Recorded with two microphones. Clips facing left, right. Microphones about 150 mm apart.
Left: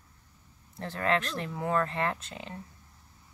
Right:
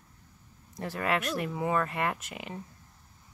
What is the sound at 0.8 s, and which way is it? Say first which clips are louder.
Speech: left 1 dB; 10° right (ahead or behind).